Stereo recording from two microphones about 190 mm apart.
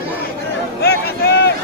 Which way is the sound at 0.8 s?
60° left (ahead or behind).